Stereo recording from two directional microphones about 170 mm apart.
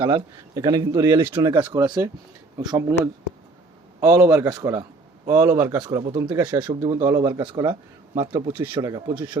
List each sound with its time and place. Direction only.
0.0 s a man's voice: 25° right (ahead or behind)
1.5 s a man's voice: 25° right (ahead or behind)